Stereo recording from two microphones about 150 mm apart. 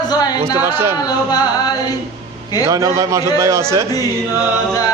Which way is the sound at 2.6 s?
20° right (ahead or behind).